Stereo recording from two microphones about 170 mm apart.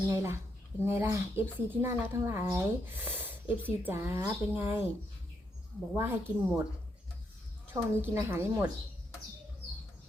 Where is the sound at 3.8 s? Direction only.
10° right (ahead or behind).